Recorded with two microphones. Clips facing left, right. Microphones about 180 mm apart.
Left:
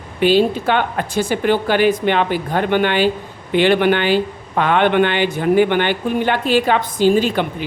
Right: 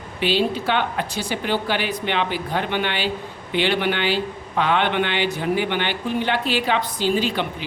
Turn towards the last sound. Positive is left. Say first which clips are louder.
# left 5 dB
turn(degrees=50)  # may be behind; listen again after turning